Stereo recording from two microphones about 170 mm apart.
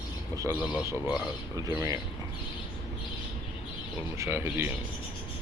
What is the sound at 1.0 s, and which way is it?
Speech, 5° right (ahead or behind).